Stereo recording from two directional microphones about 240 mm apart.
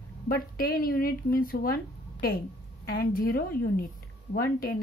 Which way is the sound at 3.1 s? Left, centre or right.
Left.